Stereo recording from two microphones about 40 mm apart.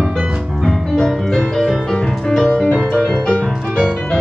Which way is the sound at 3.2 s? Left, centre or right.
Left.